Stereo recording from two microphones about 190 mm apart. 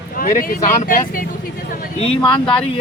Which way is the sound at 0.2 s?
50° left (ahead or behind).